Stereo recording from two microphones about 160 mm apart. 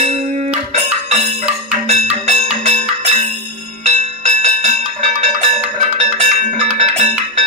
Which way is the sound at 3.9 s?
45° right (ahead or behind).